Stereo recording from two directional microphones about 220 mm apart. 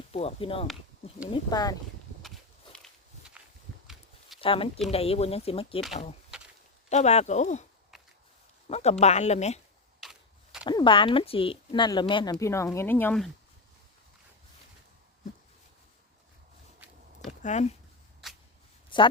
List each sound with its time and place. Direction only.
0.1 s speech: 25° left (ahead or behind)
2.2 s walk: centre (ahead or behind)
4.4 s speech: 25° left (ahead or behind)
6.9 s speech: 30° left (ahead or behind)
8.7 s speech: 30° left (ahead or behind)
10.0 s a sound: centre (ahead or behind)
10.7 s speech: 20° left (ahead or behind); by 13.3 s 5° left (ahead or behind)
17.4 s speech: 30° left (ahead or behind)
18.2 s a sound: centre (ahead or behind)
18.9 s a sound: 20° left (ahead or behind)